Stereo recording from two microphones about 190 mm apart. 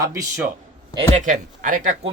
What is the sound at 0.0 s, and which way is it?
Speech, 15° right (ahead or behind).